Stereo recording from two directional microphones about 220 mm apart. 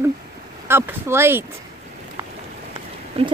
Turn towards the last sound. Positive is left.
turn(degrees=-25)  # may be behind; listen again after turning